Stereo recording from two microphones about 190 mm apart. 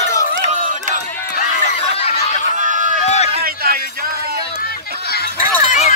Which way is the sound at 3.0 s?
35° left (ahead or behind).